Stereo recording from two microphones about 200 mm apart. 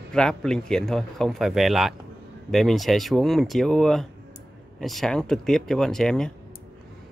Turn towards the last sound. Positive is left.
turn(degrees=5)  # may be behind; listen again after turning